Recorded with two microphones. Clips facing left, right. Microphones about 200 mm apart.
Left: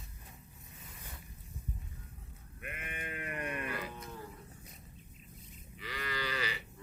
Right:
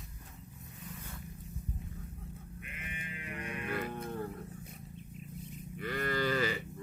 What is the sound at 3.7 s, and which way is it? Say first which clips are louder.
Music: right 6 dB; 55° right (ahead or behind).